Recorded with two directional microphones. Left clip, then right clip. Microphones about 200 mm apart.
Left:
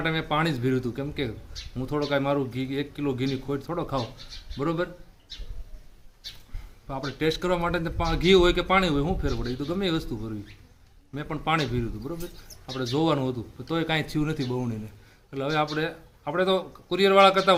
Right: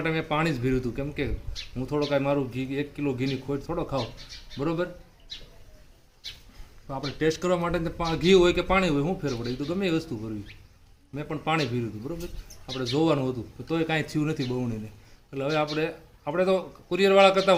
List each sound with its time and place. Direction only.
0.0 s speech: centre (ahead or behind)
6.8 s speech: 10° right (ahead or behind)